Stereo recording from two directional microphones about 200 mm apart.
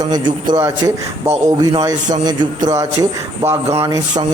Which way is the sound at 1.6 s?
20° right (ahead or behind).